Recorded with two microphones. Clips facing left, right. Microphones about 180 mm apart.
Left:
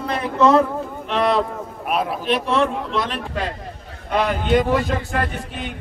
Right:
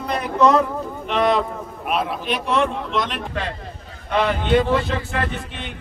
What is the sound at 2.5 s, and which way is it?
Speech, 35° left (ahead or behind).